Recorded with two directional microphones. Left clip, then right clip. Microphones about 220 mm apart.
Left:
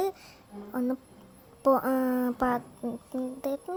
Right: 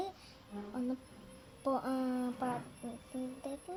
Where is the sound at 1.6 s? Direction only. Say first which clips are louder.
Left 11 dB; 40° left (ahead or behind).